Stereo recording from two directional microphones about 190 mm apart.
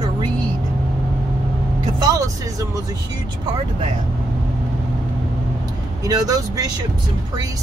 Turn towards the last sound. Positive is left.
turn(degrees=-20)  # may be behind; listen again after turning